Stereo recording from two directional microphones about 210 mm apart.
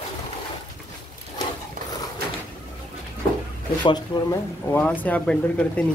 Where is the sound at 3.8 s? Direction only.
20° left (ahead or behind).